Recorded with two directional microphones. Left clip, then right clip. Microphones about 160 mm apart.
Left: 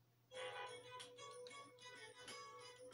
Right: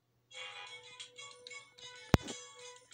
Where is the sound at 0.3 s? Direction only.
40° left (ahead or behind).